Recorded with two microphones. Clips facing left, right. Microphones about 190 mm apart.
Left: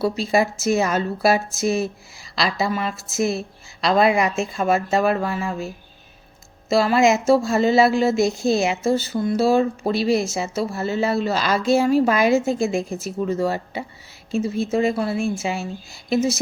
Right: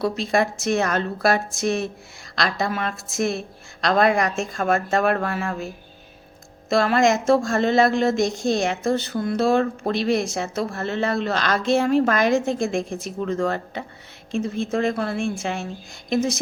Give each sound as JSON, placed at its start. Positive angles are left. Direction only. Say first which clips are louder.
{"t": 0.0, "sound": "speech", "louder": "left 2 dB", "side_deg": 5}